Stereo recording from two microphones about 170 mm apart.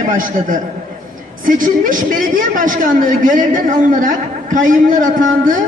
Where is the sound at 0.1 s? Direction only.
50° right (ahead or behind).